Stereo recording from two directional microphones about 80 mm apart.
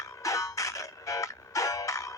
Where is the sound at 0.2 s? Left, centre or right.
Left.